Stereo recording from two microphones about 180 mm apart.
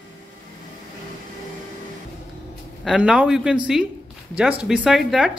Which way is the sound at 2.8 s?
5° right (ahead or behind).